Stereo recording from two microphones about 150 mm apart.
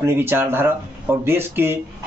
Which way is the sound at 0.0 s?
15° right (ahead or behind).